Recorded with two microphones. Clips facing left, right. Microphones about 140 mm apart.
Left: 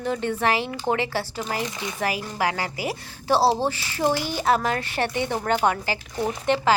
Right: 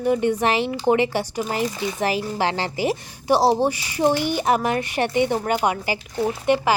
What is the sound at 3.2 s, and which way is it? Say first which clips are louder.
Speech: right 3 dB; 15° right (ahead or behind).